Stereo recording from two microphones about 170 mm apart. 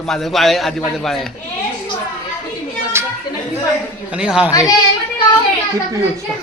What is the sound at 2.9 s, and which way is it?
Chatter, 15° right (ahead or behind).